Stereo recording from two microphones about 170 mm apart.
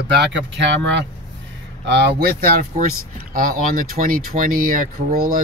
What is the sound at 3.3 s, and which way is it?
Speech, 55° right (ahead or behind).